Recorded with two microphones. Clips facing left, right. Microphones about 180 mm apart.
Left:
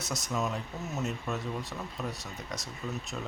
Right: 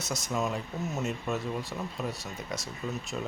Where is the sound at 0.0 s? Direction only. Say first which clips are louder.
Right 2 dB; centre (ahead or behind).